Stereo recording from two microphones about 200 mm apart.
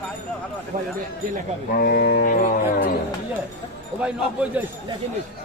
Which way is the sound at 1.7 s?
50° left (ahead or behind).